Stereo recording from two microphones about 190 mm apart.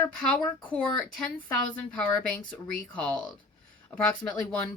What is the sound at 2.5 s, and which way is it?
Speech, 5° left (ahead or behind).